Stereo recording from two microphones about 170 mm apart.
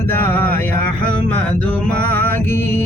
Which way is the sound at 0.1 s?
15° left (ahead or behind).